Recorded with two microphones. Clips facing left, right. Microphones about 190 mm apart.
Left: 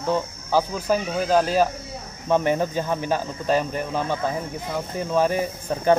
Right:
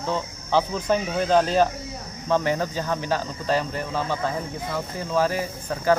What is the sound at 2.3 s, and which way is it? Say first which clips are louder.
Speech: left 2 dB; 20° left (ahead or behind).